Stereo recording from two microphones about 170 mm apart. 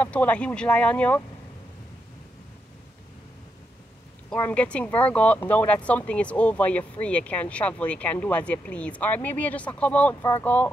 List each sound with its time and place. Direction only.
0.0 s speech: 10° left (ahead or behind)
4.3 s speech: 10° left (ahead or behind)